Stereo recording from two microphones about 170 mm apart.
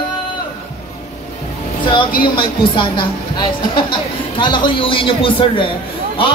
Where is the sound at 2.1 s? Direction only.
25° left (ahead or behind).